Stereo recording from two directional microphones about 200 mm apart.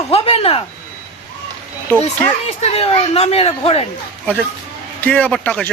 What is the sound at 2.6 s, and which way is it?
Speech, 30° left (ahead or behind).